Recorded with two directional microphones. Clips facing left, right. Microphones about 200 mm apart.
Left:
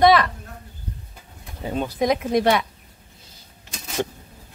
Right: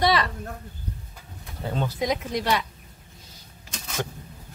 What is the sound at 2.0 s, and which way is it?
Speech, 55° left (ahead or behind).